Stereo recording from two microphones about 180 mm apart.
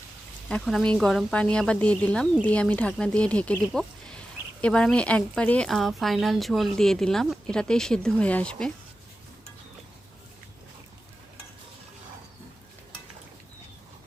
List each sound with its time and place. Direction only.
0.4 s a woman's voice: 5° left (ahead or behind)